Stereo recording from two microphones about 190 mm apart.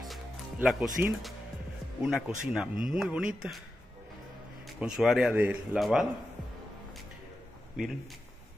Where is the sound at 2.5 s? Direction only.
5° right (ahead or behind).